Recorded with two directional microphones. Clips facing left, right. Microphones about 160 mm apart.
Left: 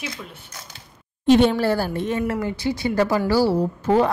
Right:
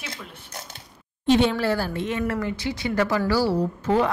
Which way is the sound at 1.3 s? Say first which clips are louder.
Left 4 dB; 45° left (ahead or behind).